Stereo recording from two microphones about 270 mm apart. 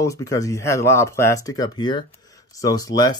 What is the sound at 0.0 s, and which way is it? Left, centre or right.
Speech, centre.